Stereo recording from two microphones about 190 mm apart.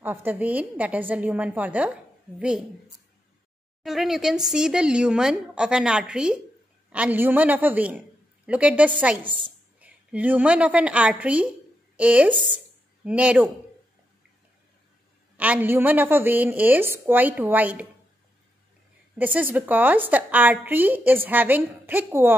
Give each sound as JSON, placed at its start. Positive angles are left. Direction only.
{"t": 0.0, "sound": "a woman's voice", "side_deg": -10}
{"t": 3.8, "sound": "a woman's voice", "side_deg": 0}
{"t": 15.3, "sound": "a woman's voice", "side_deg": -10}
{"t": 19.1, "sound": "a woman's voice", "side_deg": -10}